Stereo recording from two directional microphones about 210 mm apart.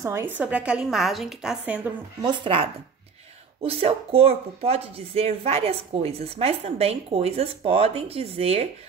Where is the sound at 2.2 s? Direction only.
20° right (ahead or behind).